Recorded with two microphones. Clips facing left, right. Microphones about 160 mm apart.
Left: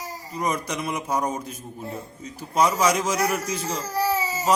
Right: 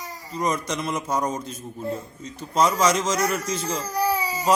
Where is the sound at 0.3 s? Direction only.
10° left (ahead or behind).